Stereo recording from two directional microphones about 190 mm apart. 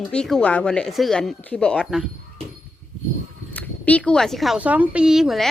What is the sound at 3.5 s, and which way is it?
Speech, 10° left (ahead or behind).